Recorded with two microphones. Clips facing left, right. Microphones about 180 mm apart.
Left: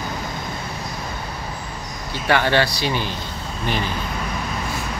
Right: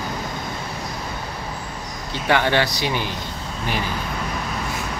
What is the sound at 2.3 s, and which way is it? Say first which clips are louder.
Speech: left 1 dB; 15° right (ahead or behind).